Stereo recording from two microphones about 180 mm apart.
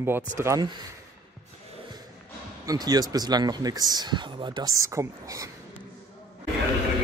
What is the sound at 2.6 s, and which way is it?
Speech, 20° right (ahead or behind).